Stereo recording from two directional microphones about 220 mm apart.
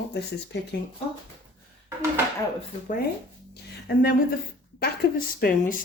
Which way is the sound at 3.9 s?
45° left (ahead or behind).